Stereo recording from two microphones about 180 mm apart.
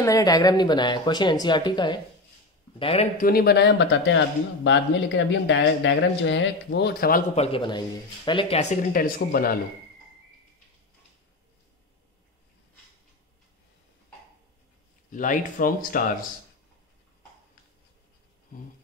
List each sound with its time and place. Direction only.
0.0 s a man's voice: 20° left (ahead or behind)
3.2 s speech: 55° left (ahead or behind)
7.3 s a man's voice: 35° left (ahead or behind)
8.9 s speech: 55° left (ahead or behind)
15.0 s speech: 45° left (ahead or behind)